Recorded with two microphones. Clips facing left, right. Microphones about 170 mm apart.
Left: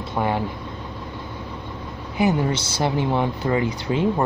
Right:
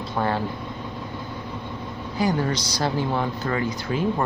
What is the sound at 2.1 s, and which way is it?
Speech, 20° left (ahead or behind).